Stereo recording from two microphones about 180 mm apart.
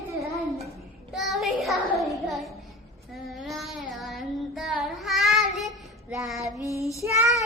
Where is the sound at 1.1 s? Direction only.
Centre (ahead or behind).